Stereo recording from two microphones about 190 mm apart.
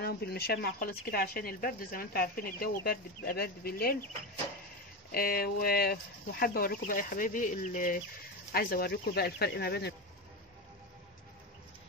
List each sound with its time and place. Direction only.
0.0 s speech: 55° left (ahead or behind)
5.1 s speech: 50° left (ahead or behind)